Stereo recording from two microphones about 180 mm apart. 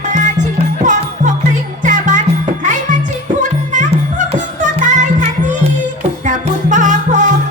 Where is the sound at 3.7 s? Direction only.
45° right (ahead or behind).